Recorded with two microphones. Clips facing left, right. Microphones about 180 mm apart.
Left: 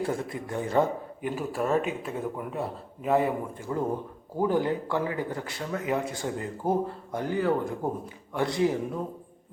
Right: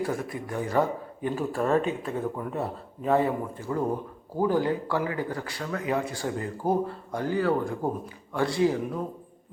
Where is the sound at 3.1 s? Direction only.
15° left (ahead or behind).